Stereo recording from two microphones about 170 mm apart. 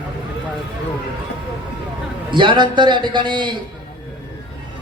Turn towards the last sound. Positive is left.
turn(degrees=-30)  # may be behind; listen again after turning